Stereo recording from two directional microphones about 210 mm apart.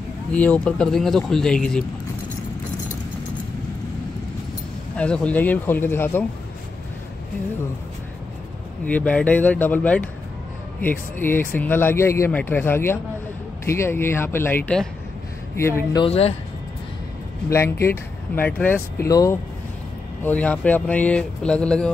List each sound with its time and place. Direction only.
0.3 s speech: 5° left (ahead or behind)
4.9 s speech: 5° left (ahead or behind)
8.8 s speech: 5° left (ahead or behind)
16.0 s speech: 30° left (ahead or behind)
17.5 s speech: 10° left (ahead or behind)